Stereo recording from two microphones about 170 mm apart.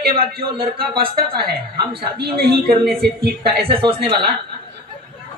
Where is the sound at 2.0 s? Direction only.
70° right (ahead or behind).